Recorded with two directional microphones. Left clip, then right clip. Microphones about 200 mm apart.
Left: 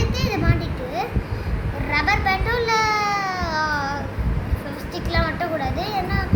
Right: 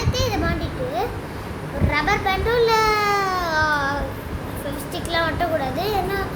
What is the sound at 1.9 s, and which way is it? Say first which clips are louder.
Children playing: left 1 dB; 20° right (ahead or behind).